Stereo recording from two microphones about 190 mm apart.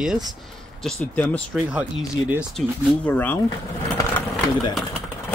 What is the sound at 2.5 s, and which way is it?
Speech, 10° left (ahead or behind).